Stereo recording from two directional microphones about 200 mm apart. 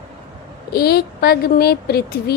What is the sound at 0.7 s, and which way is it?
A woman's voice, 50° left (ahead or behind).